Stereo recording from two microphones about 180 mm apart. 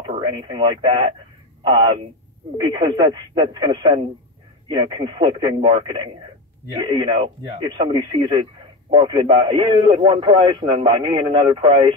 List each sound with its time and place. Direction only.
0.1 s speech: 25° right (ahead or behind)
2.5 s a man's voice: 25° right (ahead or behind)